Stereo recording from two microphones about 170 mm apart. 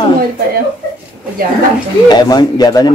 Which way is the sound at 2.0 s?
25° left (ahead or behind).